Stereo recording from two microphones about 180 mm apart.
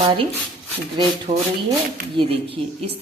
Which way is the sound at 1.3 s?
40° right (ahead or behind).